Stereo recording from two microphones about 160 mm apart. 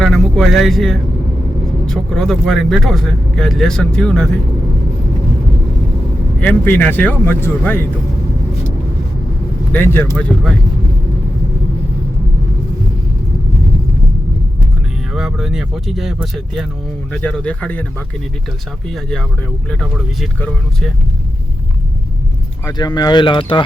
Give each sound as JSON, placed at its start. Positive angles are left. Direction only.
{"t": 0.0, "sound": "a sound", "side_deg": 0}
{"t": 1.9, "sound": "speech", "side_deg": 5}
{"t": 6.4, "sound": "speech", "side_deg": 10}
{"t": 9.7, "sound": "speech", "side_deg": 10}
{"t": 15.1, "sound": "speech", "side_deg": 0}
{"t": 22.6, "sound": "speech", "side_deg": 25}